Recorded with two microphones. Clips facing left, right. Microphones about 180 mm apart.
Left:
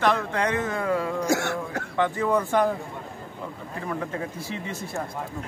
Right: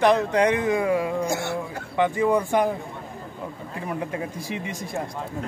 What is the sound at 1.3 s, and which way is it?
Speech, 90° left.